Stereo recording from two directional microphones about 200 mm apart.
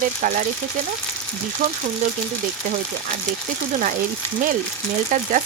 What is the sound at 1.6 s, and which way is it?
Speech, 40° right (ahead or behind).